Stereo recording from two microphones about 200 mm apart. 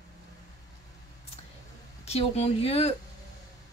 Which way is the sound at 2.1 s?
30° left (ahead or behind).